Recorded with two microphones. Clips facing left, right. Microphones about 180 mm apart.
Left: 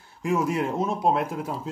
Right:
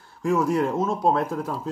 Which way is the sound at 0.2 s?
15° left (ahead or behind).